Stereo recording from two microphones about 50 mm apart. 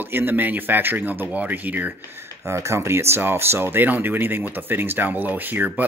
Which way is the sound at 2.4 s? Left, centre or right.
Right.